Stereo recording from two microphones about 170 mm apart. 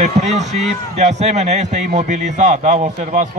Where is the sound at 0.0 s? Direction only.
40° right (ahead or behind).